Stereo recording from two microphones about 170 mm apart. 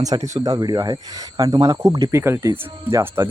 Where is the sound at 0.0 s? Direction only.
20° right (ahead or behind).